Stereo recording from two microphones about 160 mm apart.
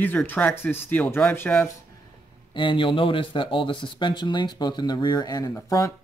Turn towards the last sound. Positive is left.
turn(degrees=20)  # may be behind; listen again after turning